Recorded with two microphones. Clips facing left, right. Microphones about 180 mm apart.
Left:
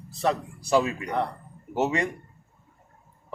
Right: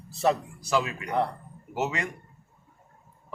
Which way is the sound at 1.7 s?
30° left (ahead or behind).